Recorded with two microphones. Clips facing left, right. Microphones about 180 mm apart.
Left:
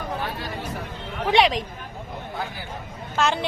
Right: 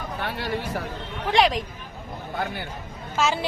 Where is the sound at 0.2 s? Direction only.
70° right (ahead or behind).